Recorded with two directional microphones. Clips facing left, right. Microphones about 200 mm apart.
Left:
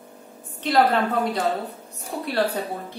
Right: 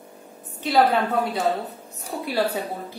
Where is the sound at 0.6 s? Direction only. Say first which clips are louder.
Even; 5° right (ahead or behind).